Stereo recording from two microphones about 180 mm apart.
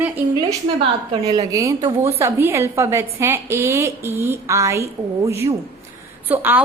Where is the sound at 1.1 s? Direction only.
20° right (ahead or behind).